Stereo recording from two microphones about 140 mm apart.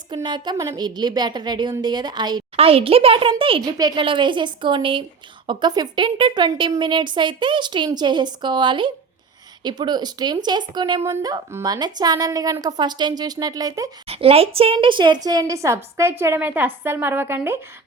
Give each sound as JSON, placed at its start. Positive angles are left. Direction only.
{"t": 0.1, "sound": "a woman's voice", "side_deg": -35}
{"t": 2.6, "sound": "a woman's voice", "side_deg": -45}
{"t": 14.1, "sound": "a woman's voice", "side_deg": -45}